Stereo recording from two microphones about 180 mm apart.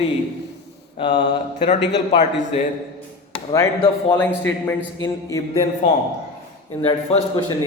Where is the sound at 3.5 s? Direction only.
20° left (ahead or behind).